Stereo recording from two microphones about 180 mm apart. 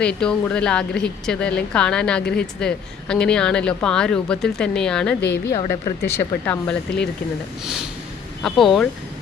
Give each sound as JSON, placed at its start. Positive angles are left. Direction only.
{"t": 0.0, "sound": "speech", "side_deg": 5}
{"t": 2.2, "sound": "speech", "side_deg": 60}
{"t": 2.6, "sound": "speech", "side_deg": 5}
{"t": 5.5, "sound": "speech", "side_deg": 20}